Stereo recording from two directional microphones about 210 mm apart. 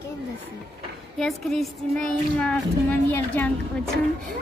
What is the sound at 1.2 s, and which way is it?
Speech, centre (ahead or behind).